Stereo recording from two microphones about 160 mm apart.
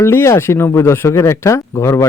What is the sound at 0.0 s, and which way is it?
Speech, 15° left (ahead or behind).